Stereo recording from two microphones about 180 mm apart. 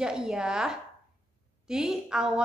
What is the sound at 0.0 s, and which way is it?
A woman's voice, 5° right (ahead or behind).